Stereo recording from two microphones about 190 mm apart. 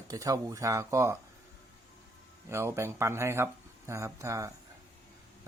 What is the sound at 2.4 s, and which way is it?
Speech, 15° right (ahead or behind).